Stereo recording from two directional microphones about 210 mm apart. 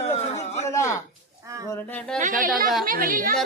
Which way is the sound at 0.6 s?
15° left (ahead or behind).